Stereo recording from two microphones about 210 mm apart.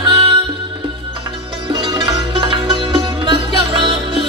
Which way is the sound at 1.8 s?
25° right (ahead or behind).